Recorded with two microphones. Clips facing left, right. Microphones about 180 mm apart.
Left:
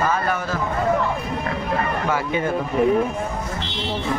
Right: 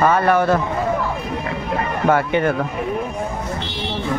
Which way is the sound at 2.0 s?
60° right (ahead or behind).